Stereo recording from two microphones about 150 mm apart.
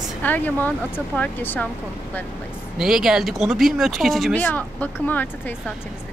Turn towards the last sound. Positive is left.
turn(degrees=10)  # may be behind; listen again after turning